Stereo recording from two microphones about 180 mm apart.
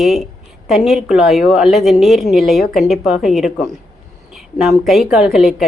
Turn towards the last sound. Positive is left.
turn(degrees=0)  # may be behind; listen again after turning